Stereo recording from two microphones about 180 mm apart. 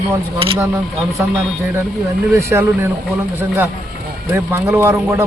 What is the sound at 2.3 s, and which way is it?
Speech, 15° right (ahead or behind).